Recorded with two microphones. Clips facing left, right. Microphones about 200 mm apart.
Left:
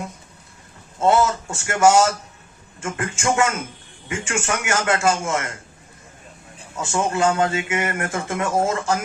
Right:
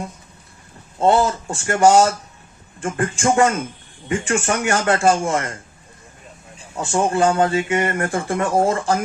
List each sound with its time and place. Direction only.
0.9 s speech: 30° right (ahead or behind)
6.9 s speech: 35° right (ahead or behind)